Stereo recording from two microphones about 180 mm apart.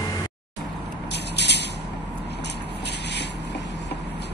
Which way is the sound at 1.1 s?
70° left (ahead or behind).